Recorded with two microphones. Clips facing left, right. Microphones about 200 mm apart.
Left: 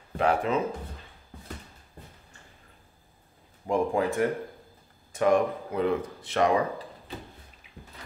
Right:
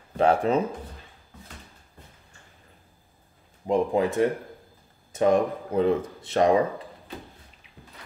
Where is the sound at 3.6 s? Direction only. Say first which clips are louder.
Right 3 dB; 20° right (ahead or behind).